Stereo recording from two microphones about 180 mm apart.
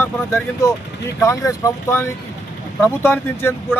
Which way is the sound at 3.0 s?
15° left (ahead or behind).